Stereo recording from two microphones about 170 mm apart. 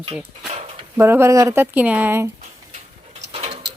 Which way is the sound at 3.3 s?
35° right (ahead or behind).